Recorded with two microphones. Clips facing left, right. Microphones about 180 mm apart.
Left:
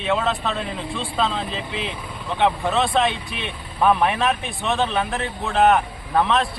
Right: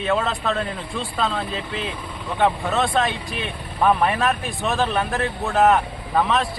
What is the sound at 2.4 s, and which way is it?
A man's voice, centre (ahead or behind).